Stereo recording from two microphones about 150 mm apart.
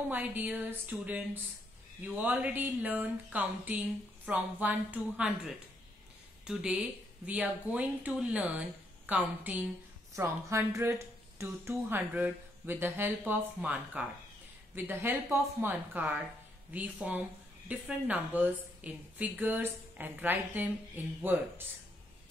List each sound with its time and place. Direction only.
0.1 s speech: 10° right (ahead or behind)